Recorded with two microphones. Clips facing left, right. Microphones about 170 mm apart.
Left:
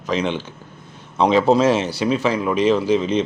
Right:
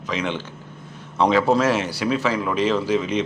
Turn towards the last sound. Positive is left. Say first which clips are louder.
# left 3 dB
turn(degrees=25)  # may be behind; listen again after turning